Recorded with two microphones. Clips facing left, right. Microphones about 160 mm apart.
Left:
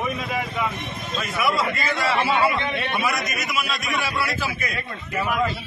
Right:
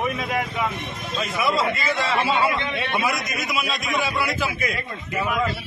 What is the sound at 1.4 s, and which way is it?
Speech, 25° right (ahead or behind).